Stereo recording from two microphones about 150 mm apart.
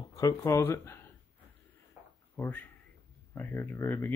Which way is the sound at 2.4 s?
10° left (ahead or behind).